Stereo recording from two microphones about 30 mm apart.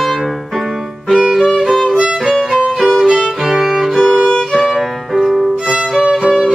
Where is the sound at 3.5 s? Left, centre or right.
Centre.